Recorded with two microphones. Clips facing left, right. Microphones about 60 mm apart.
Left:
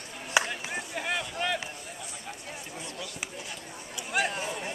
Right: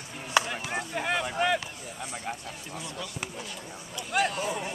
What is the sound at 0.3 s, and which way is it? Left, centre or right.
Chop, centre.